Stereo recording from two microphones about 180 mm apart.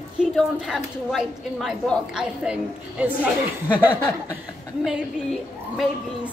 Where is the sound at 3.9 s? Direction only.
10° left (ahead or behind).